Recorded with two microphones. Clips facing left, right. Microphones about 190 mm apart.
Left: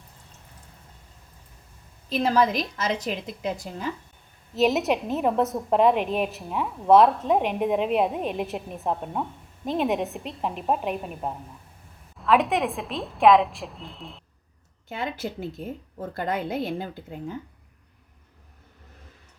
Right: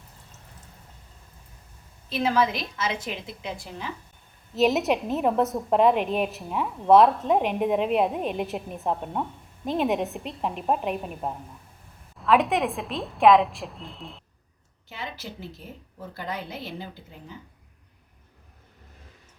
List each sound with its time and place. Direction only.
2.0 s a woman's voice: 40° left (ahead or behind)
4.5 s a woman's voice: centre (ahead or behind)
14.8 s a woman's voice: 50° left (ahead or behind)